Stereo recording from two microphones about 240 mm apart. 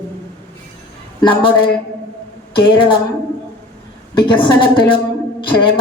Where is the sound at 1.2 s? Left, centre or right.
Left.